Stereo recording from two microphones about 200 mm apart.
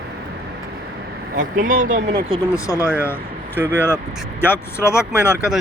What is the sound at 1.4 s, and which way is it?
Speech, 40° right (ahead or behind).